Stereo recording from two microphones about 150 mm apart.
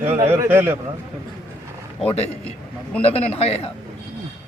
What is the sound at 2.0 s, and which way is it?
Speech, 45° left (ahead or behind).